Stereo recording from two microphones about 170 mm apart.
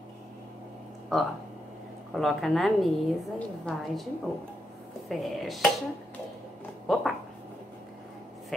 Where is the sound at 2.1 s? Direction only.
Centre (ahead or behind).